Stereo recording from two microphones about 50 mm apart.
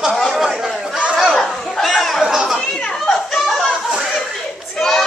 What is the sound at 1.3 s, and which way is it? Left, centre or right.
Chatter, centre.